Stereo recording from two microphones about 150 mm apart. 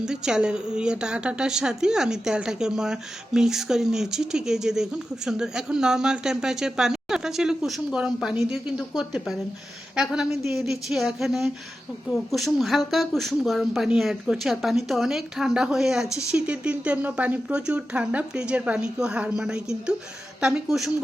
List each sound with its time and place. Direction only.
0.0 s a woman's voice: 5° right (ahead or behind)